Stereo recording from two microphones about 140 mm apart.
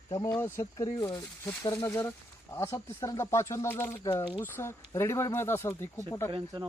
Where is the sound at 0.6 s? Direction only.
30° left (ahead or behind).